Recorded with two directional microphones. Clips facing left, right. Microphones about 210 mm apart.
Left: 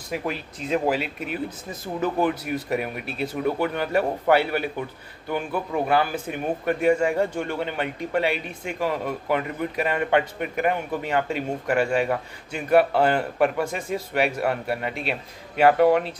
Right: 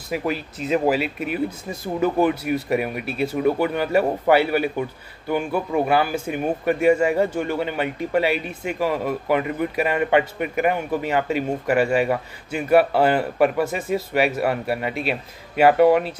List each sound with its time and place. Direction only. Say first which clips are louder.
0.1 s a man's voice: right 4 dB; 5° right (ahead or behind)